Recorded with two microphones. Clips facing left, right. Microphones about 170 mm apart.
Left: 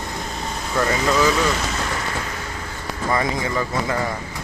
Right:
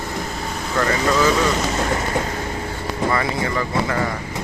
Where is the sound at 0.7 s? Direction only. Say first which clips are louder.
Right 1 dB; 5° left (ahead or behind).